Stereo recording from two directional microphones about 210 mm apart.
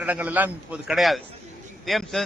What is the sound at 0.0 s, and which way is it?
A man's voice, 5° right (ahead or behind).